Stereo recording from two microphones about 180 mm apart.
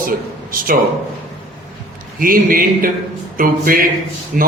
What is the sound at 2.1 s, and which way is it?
A man's voice, 50° right (ahead or behind).